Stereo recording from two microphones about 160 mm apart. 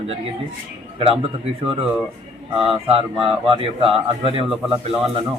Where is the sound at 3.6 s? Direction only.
35° right (ahead or behind).